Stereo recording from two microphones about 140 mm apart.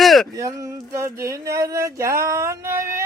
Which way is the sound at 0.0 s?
Centre (ahead or behind).